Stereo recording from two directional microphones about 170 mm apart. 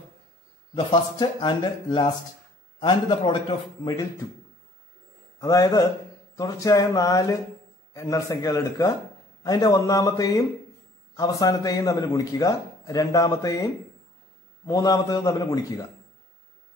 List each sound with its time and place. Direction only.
1.1 s a man's voice: 25° left (ahead or behind)
5.4 s a man's voice: 20° left (ahead or behind)
14.7 s a man's voice: 20° left (ahead or behind)